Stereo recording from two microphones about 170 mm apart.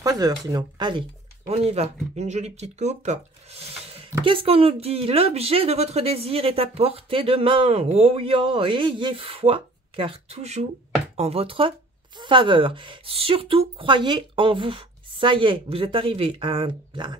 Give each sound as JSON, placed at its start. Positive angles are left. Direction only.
{"t": 0.0, "sound": "speech", "side_deg": -20}
{"t": 1.5, "sound": "a woman's voice", "side_deg": -40}